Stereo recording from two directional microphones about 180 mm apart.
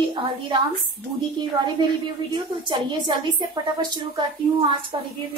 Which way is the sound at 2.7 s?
25° right (ahead or behind).